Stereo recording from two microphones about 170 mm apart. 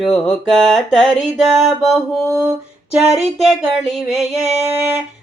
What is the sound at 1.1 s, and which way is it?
Music, 40° left (ahead or behind).